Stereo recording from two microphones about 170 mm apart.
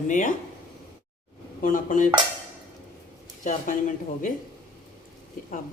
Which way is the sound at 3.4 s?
50° left (ahead or behind).